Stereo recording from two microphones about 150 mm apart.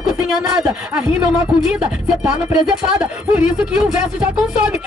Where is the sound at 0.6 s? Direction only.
5° right (ahead or behind).